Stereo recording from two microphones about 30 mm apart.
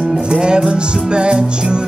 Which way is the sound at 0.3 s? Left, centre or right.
Right.